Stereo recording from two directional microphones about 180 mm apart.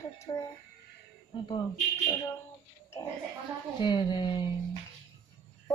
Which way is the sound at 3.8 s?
25° left (ahead or behind).